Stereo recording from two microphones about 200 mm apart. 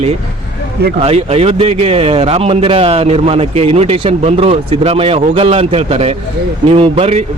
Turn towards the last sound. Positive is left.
turn(degrees=-30)  # may be behind; listen again after turning